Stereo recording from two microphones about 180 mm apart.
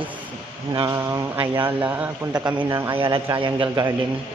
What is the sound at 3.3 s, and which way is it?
Speech, 25° right (ahead or behind).